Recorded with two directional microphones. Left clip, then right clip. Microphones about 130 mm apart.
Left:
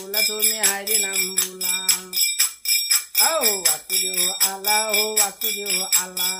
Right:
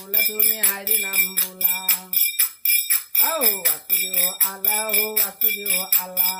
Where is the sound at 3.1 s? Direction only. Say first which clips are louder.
Left 3 dB; 15° left (ahead or behind).